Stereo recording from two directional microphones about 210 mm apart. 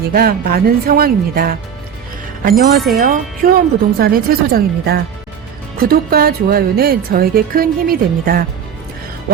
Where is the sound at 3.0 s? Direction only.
40° right (ahead or behind).